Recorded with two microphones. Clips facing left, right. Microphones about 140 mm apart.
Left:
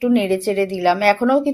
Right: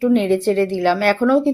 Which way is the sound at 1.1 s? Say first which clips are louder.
Right 1 dB; 15° left (ahead or behind).